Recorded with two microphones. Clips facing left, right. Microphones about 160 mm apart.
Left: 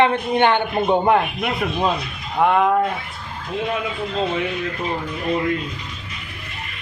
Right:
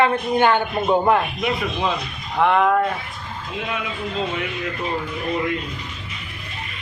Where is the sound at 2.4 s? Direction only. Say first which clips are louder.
Left 1 dB; 15° left (ahead or behind).